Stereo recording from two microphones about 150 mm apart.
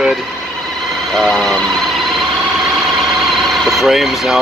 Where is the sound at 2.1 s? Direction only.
Centre (ahead or behind).